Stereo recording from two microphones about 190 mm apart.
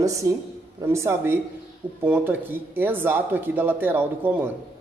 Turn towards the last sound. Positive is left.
turn(degrees=-10)  # may be behind; listen again after turning